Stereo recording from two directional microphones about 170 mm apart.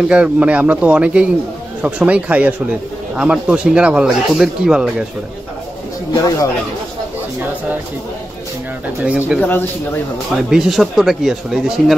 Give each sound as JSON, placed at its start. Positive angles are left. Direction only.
{"t": 0.1, "sound": "speech", "side_deg": -5}
{"t": 6.2, "sound": "speech", "side_deg": 20}
{"t": 9.0, "sound": "speech", "side_deg": -5}
{"t": 9.4, "sound": "speech", "side_deg": 10}
{"t": 10.3, "sound": "speech", "side_deg": 0}